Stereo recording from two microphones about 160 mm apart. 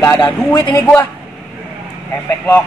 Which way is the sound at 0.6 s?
25° left (ahead or behind).